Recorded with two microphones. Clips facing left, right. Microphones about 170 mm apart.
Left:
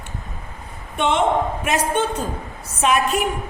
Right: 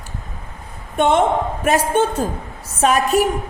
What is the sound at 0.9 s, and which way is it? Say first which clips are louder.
A woman's voice: right 3 dB; 45° right (ahead or behind).